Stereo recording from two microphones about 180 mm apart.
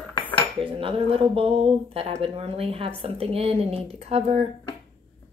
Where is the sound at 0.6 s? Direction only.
30° right (ahead or behind).